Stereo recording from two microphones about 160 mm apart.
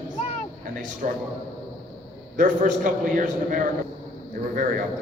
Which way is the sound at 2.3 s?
55° right (ahead or behind).